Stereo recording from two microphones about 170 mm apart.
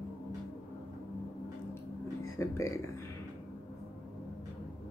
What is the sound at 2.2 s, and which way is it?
Speech, 15° left (ahead or behind).